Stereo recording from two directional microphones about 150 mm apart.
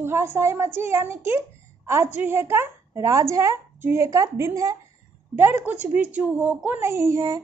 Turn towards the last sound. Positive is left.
turn(degrees=-20)  # may be behind; listen again after turning